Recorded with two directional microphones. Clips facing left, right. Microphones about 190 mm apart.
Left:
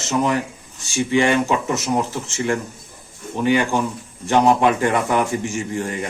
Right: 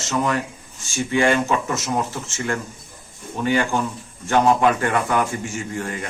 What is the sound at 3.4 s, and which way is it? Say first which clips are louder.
A man's voice: left 2 dB; 15° left (ahead or behind).